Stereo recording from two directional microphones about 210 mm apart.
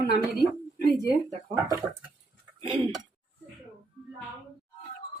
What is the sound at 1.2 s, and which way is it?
Speech, 15° right (ahead or behind).